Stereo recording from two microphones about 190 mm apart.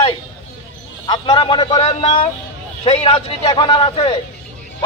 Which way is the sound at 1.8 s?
35° left (ahead or behind).